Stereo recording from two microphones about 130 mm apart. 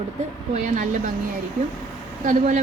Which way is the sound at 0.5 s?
70° right (ahead or behind).